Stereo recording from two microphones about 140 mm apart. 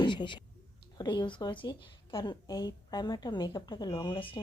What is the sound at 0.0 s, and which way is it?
A woman's voice, 35° left (ahead or behind).